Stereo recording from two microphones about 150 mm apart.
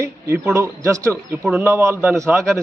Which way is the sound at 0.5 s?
20° right (ahead or behind).